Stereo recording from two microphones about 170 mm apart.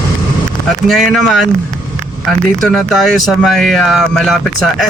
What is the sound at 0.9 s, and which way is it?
Speech, centre (ahead or behind).